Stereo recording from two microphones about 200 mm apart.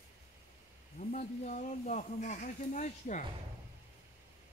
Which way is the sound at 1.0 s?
40° left (ahead or behind).